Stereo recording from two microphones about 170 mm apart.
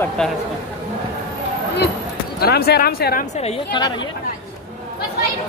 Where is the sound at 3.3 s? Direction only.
40° left (ahead or behind).